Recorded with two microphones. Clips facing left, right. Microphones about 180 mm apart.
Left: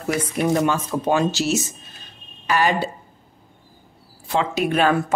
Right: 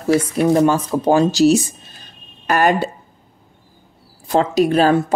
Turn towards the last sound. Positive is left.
turn(degrees=-35)  # may be behind; listen again after turning